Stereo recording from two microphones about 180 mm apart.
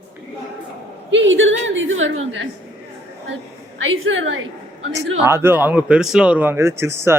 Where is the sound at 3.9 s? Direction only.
90° right.